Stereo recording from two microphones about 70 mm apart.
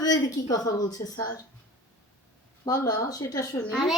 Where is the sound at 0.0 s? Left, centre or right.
Left.